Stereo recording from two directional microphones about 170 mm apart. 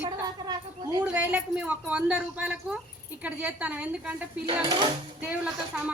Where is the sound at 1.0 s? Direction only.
10° right (ahead or behind).